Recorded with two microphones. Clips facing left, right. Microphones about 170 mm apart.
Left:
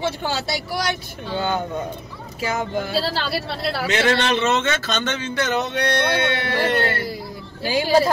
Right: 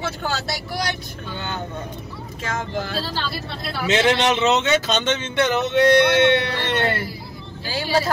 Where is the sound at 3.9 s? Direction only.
20° right (ahead or behind).